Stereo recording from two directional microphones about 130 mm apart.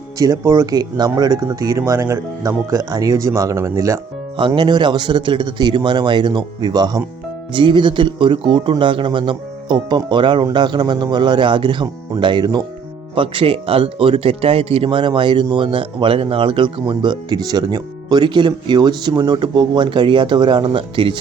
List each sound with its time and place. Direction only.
0.2 s speech: 25° right (ahead or behind)
4.4 s speech: 40° right (ahead or behind)